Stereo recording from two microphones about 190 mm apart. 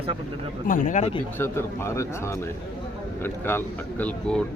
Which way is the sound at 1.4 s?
15° left (ahead or behind).